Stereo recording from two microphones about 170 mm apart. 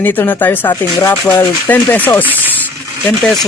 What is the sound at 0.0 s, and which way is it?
A man's voice, 10° left (ahead or behind).